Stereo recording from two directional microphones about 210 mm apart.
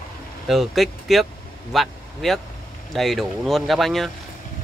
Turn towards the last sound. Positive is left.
turn(degrees=0)  # may be behind; listen again after turning